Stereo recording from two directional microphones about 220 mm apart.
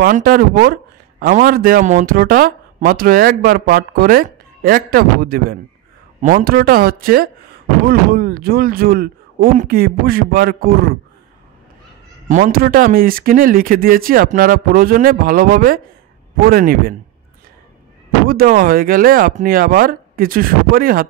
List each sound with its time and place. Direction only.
0.0 s speech: 40° right (ahead or behind)
12.3 s speech: 40° right (ahead or behind)
18.3 s speech: 40° right (ahead or behind)